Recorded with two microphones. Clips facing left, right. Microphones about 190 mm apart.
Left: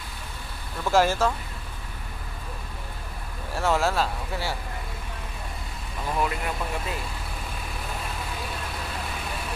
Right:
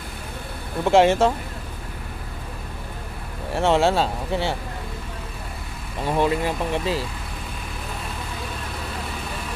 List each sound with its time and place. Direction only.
0.8 s speech: 25° right (ahead or behind)
3.5 s speech: 25° right (ahead or behind)
6.0 s speech: 25° right (ahead or behind)